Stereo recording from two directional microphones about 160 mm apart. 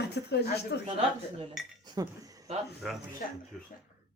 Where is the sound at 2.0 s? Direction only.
25° right (ahead or behind).